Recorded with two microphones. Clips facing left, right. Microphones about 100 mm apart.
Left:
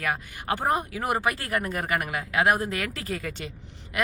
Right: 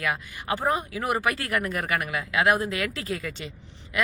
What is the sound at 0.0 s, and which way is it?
Speech, 45° left (ahead or behind).